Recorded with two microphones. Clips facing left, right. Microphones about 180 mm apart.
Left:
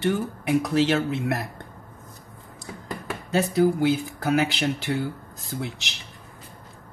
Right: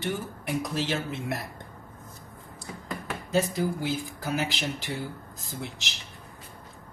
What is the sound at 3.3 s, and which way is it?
Speech, 65° left (ahead or behind).